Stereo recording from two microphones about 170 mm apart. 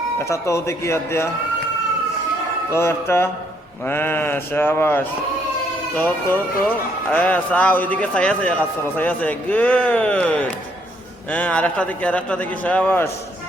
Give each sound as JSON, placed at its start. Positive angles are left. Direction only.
{"t": 0.3, "sound": "speech", "side_deg": 15}
{"t": 2.7, "sound": "speech", "side_deg": 15}